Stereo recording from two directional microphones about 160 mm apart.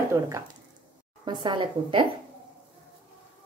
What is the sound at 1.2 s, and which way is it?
Speech, 30° right (ahead or behind).